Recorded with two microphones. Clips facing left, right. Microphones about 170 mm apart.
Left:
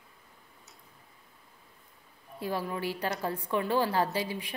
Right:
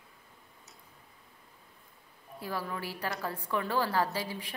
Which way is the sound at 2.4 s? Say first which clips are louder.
Left 4 dB; 20° left (ahead or behind).